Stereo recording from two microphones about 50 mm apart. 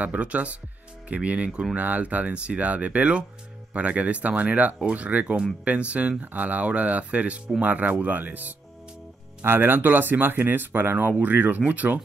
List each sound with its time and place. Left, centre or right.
0.0 s speech: right
1.5 s speech: centre
1.8 s speech: right
9.4 s speech: right